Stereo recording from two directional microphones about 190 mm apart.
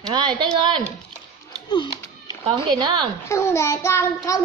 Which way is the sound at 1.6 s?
25° left (ahead or behind).